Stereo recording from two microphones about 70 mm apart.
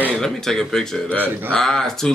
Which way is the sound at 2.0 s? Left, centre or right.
Centre.